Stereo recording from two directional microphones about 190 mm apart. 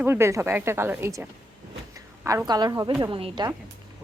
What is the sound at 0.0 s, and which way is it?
A woman's voice, 15° right (ahead or behind).